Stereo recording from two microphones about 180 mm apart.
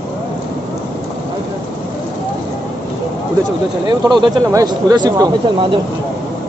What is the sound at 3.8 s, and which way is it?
Speech, 25° right (ahead or behind).